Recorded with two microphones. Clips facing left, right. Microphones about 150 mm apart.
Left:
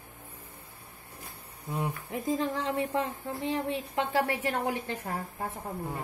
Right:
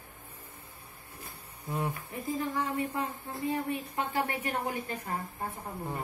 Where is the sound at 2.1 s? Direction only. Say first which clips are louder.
Left 4 dB; 90° left.